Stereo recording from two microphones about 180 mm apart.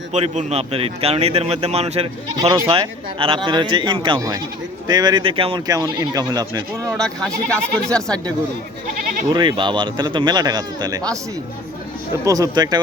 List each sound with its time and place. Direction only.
0.1 s a man's voice: 40° right (ahead or behind)
2.4 s speech: 20° right (ahead or behind)
6.9 s speech: 5° left (ahead or behind)
9.3 s speech: 25° right (ahead or behind)
12.2 s speech: 20° right (ahead or behind)